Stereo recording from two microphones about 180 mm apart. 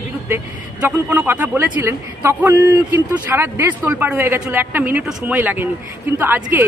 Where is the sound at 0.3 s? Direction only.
10° right (ahead or behind).